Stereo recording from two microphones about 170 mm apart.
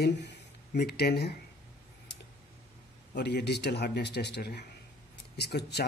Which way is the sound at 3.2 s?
80° left.